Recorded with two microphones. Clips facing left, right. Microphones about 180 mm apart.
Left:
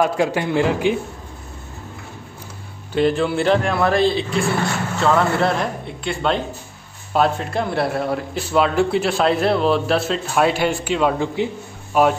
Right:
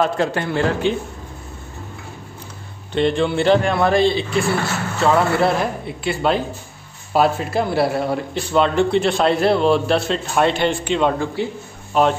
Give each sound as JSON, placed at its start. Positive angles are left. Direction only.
{"t": 0.0, "sound": "a man's voice", "side_deg": 15}
{"t": 2.9, "sound": "a man's voice", "side_deg": 5}
{"t": 11.4, "sound": "a man's voice", "side_deg": 20}